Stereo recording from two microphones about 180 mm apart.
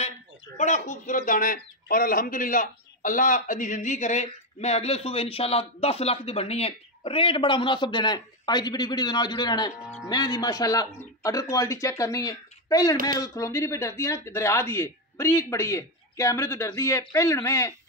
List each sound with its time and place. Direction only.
0.6 s a man's voice: 40° left (ahead or behind); by 17.7 s 15° left (ahead or behind)